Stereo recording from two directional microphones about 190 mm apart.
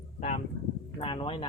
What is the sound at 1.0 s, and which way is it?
Speech, 25° left (ahead or behind).